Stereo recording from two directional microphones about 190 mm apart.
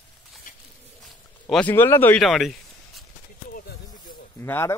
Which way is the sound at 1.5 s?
10° left (ahead or behind).